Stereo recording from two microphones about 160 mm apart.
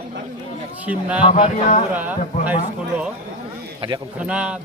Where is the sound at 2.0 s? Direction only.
10° right (ahead or behind).